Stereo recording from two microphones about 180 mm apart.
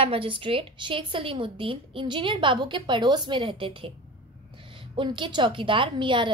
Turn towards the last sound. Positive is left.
turn(degrees=-25)  # may be behind; listen again after turning